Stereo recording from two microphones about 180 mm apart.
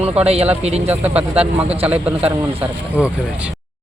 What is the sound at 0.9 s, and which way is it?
Speech, 10° right (ahead or behind).